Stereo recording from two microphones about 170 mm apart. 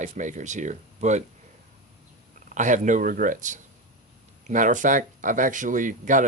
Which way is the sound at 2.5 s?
45° right (ahead or behind).